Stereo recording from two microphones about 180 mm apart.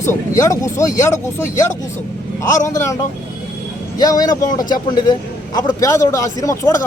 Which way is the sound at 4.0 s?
20° left (ahead or behind).